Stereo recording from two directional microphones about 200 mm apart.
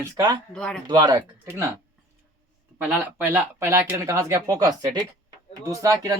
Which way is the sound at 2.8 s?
5° right (ahead or behind).